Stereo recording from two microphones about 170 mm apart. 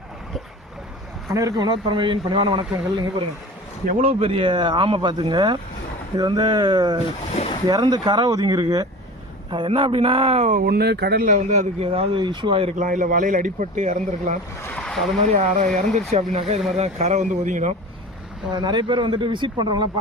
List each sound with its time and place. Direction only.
1.3 s speech: 20° right (ahead or behind)
3.8 s speech: 45° right (ahead or behind); by 7.0 s 25° right (ahead or behind)
7.3 s boat: 35° left (ahead or behind)
7.7 s speech: 25° right (ahead or behind); by 11.3 s 70° right (ahead or behind)
11.3 s speech: 45° right (ahead or behind)
12.8 s speech: 50° right (ahead or behind)
14.6 s boat: 5° left (ahead or behind)
15.3 s speech: 45° right (ahead or behind)
18.5 s speech: 25° right (ahead or behind)